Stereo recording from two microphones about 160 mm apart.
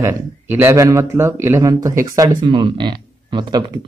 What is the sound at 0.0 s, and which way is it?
Speech, 15° right (ahead or behind).